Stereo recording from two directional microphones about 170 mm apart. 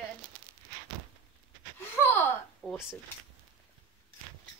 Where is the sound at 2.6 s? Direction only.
5° left (ahead or behind).